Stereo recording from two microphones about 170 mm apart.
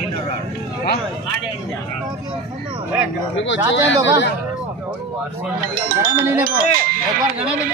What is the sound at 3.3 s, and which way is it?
Speech, 90° left.